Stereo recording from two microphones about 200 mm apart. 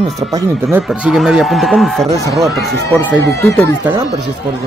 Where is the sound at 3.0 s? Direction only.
10° left (ahead or behind).